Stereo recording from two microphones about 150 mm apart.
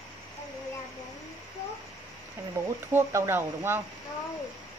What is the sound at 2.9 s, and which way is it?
Speech, 15° right (ahead or behind).